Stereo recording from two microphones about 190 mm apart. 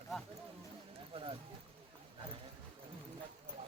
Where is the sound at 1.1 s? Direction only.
30° right (ahead or behind).